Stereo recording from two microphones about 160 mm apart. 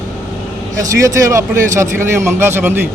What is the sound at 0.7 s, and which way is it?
Speech, 20° right (ahead or behind).